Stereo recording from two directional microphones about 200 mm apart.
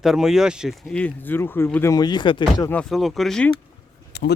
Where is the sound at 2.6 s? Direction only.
5° left (ahead or behind).